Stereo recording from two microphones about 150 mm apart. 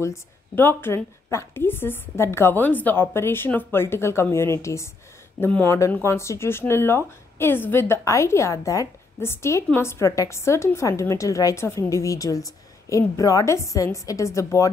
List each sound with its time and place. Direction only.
0.0 s a woman's voice: 15° left (ahead or behind)